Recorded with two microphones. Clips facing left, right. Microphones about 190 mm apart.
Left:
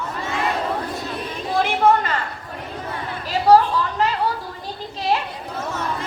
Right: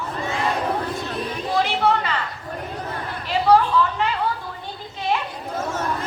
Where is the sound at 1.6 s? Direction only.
45° left (ahead or behind).